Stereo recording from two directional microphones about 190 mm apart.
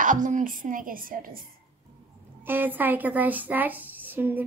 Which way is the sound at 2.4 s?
10° right (ahead or behind).